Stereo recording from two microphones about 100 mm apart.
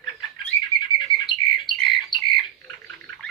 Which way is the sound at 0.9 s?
50° left (ahead or behind).